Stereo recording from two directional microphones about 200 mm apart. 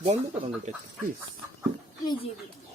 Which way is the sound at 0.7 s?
35° right (ahead or behind).